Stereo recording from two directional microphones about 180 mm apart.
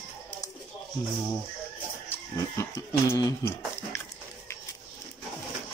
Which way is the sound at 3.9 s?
15° left (ahead or behind).